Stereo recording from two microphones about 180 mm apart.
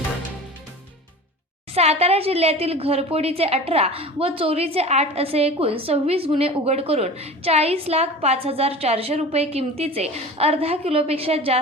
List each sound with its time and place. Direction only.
1.7 s a woman's voice: 35° right (ahead or behind)